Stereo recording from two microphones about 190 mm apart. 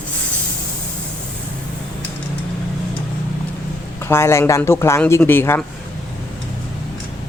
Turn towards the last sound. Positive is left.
turn(degrees=10)  # may be behind; listen again after turning